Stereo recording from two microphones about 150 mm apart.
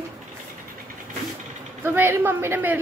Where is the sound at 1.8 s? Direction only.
15° right (ahead or behind).